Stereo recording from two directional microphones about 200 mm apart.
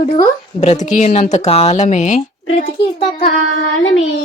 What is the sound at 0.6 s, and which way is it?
A child's voice, 35° left (ahead or behind).